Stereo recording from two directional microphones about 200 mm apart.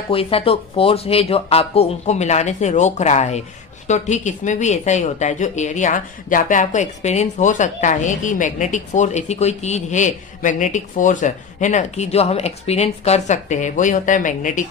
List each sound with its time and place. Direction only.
0.1 s speech: 30° left (ahead or behind)